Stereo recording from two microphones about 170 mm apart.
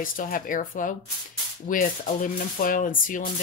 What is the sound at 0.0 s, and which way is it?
Speech, 55° left (ahead or behind).